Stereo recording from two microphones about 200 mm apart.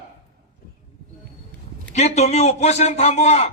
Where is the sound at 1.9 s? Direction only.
35° left (ahead or behind).